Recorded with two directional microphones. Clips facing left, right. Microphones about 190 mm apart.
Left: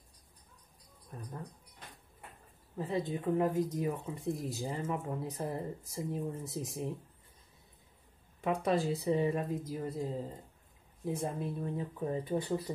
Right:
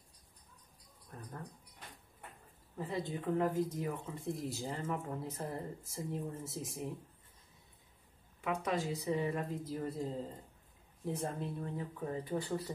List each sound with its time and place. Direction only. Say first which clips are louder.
1.1 s speech: left 3 dB; 20° left (ahead or behind)
2.8 s speech: left 4 dB; 20° left (ahead or behind)
8.4 s speech: left 5 dB; 35° left (ahead or behind)